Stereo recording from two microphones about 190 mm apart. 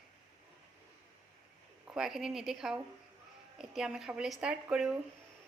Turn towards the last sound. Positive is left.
turn(degrees=-5)  # may be behind; listen again after turning